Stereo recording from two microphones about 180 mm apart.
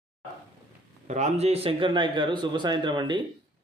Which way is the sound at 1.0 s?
40° right (ahead or behind).